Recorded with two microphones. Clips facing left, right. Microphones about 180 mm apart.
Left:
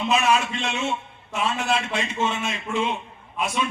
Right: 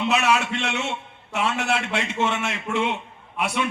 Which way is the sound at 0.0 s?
70° right (ahead or behind).